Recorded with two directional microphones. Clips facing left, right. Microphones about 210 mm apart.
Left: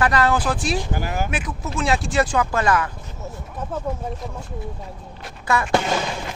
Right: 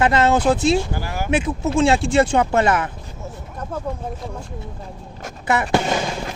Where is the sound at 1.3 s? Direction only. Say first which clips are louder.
Right 8 dB; 25° right (ahead or behind).